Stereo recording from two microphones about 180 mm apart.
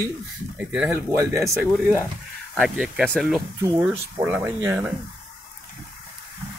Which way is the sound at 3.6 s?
20° right (ahead or behind).